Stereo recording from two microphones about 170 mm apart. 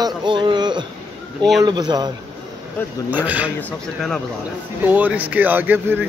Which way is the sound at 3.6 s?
5° left (ahead or behind).